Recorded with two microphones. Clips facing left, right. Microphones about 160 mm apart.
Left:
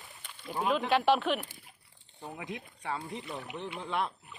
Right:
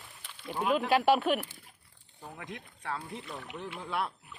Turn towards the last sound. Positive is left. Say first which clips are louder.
# left 1 dB
turn(degrees=-5)  # may be behind; listen again after turning